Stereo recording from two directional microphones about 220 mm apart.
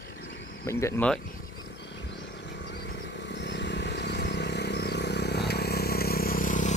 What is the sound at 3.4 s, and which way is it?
Vehicle, 50° left (ahead or behind).